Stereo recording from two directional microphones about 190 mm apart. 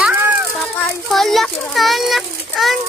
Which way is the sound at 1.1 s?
Centre (ahead or behind).